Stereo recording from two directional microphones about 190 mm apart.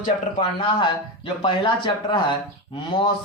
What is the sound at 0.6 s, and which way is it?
Speech, 25° left (ahead or behind).